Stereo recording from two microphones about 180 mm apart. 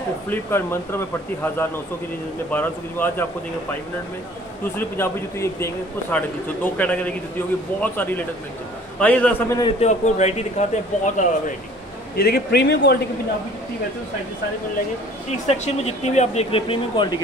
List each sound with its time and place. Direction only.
0.3 s a man's voice: 10° left (ahead or behind)
4.7 s a man's voice: 15° left (ahead or behind)
9.8 s speech: 40° left (ahead or behind)
12.2 s a man's voice: 60° left (ahead or behind)
15.4 s speech: 40° left (ahead or behind)